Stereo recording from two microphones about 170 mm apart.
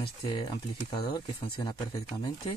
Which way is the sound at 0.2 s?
25° left (ahead or behind).